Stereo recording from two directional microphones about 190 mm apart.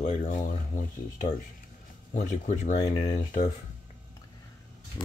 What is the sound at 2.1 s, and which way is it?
Speech, 40° left (ahead or behind).